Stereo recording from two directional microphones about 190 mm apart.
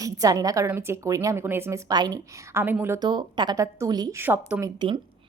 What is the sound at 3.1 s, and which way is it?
A woman's voice, 25° right (ahead or behind).